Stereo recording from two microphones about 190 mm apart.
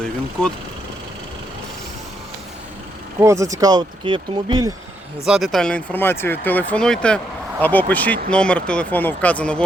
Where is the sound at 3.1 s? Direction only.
15° right (ahead or behind).